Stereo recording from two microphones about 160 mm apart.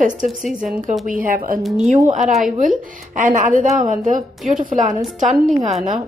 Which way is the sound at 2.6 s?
55° right (ahead or behind).